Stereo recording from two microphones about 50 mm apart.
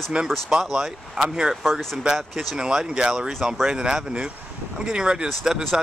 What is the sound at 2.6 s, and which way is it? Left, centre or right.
Speech, centre.